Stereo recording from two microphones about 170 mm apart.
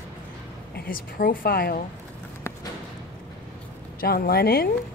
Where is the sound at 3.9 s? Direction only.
60° left (ahead or behind).